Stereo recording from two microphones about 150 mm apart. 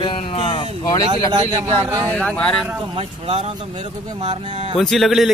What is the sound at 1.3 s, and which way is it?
Speech, 25° right (ahead or behind).